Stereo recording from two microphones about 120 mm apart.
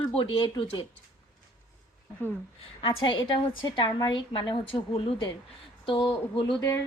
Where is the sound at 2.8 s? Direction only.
40° left (ahead or behind).